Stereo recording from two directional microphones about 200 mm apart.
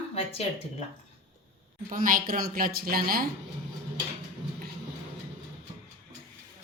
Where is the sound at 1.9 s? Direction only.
45° right (ahead or behind).